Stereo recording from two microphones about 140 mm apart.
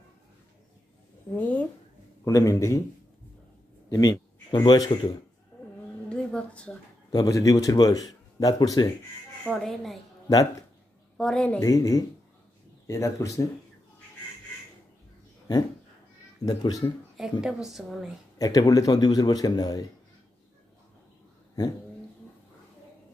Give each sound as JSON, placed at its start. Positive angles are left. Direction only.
{"t": 1.3, "sound": "speech", "side_deg": 10}
{"t": 2.2, "sound": "a man's voice", "side_deg": 25}
{"t": 3.9, "sound": "a man's voice", "side_deg": 25}
{"t": 6.0, "sound": "a sound", "side_deg": 10}
{"t": 7.1, "sound": "a man's voice", "side_deg": 25}
{"t": 9.4, "sound": "a woman's voice", "side_deg": 5}
{"t": 11.1, "sound": "a woman's voice", "side_deg": 5}
{"t": 11.6, "sound": "a man's voice", "side_deg": 25}
{"t": 16.4, "sound": "a man's voice", "side_deg": 30}
{"t": 17.2, "sound": "a woman's voice", "side_deg": -5}
{"t": 18.4, "sound": "a man's voice", "side_deg": 25}